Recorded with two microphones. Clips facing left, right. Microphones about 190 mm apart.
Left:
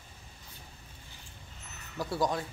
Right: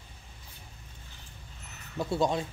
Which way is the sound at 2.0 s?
25° right (ahead or behind).